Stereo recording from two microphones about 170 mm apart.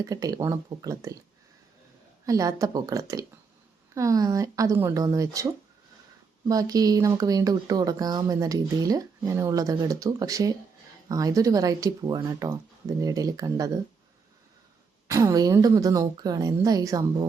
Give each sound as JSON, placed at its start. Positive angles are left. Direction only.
{"t": 0.0, "sound": "speech", "side_deg": -20}
{"t": 2.2, "sound": "speech", "side_deg": -20}
{"t": 6.5, "sound": "speech", "side_deg": -20}
{"t": 15.0, "sound": "speech", "side_deg": -20}